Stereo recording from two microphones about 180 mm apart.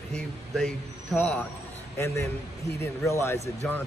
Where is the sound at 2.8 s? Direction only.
15° left (ahead or behind).